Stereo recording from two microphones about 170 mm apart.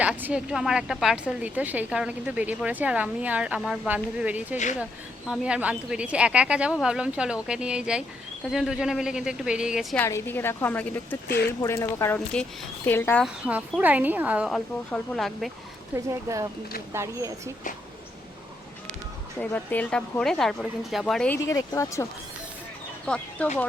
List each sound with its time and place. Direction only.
0.0 s a woman's voice: 10° right (ahead or behind)
10.0 s speech: 15° left (ahead or behind)
11.3 s speech: 70° left (ahead or behind)
11.6 s speech: 15° left (ahead or behind)
13.2 s a woman's voice: 5° right (ahead or behind)
16.0 s a woman's voice: 20° right (ahead or behind)
19.4 s speech: 10° left (ahead or behind)
21.4 s speech: 20° left (ahead or behind)
23.0 s speech: 5° left (ahead or behind)